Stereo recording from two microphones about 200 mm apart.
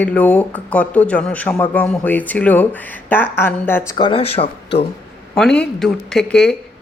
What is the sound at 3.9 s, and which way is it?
Speech, 25° left (ahead or behind).